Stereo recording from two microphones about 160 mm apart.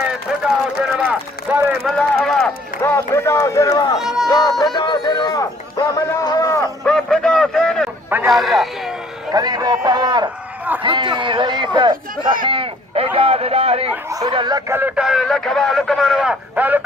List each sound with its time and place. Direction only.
0.4 s speech: 5° right (ahead or behind)
2.0 s speech: 5° left (ahead or behind)
2.8 s a man's voice: 15° left (ahead or behind)
4.0 s speech: 5° right (ahead or behind)
4.3 s a man's voice: 25° left (ahead or behind)
6.8 s a sound: 5° left (ahead or behind)
8.3 s speech: centre (ahead or behind)
9.3 s a man's voice: 25° right (ahead or behind)
14.0 s a man's voice: 20° right (ahead or behind)
14.7 s speech: 10° right (ahead or behind)